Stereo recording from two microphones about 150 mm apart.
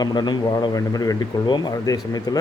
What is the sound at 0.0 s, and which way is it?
A man's voice, 25° left (ahead or behind).